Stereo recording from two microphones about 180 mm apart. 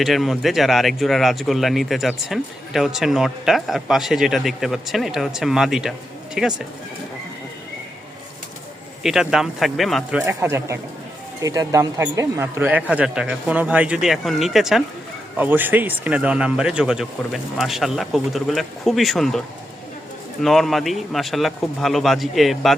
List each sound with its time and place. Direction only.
0.0 s speech: centre (ahead or behind)
9.0 s a man's voice: centre (ahead or behind)
20.4 s speech: centre (ahead or behind)